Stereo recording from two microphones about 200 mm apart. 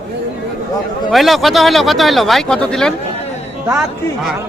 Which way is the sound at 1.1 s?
Centre (ahead or behind).